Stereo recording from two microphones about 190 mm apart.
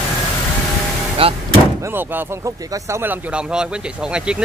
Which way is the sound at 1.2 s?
30° right (ahead or behind).